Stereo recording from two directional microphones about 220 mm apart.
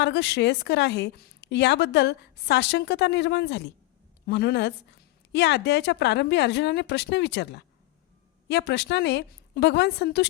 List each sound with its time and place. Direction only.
0.0 s a woman's voice: 50° left (ahead or behind)